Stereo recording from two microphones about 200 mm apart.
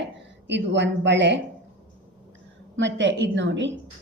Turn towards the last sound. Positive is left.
turn(degrees=-65)  # may be behind; listen again after turning